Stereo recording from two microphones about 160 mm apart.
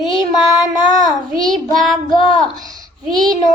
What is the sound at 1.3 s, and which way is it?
Child singing, 5° left (ahead or behind).